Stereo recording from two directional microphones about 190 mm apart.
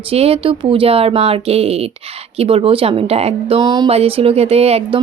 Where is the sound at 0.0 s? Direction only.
30° right (ahead or behind).